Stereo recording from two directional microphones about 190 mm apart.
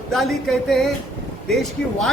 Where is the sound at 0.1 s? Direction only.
Centre (ahead or behind).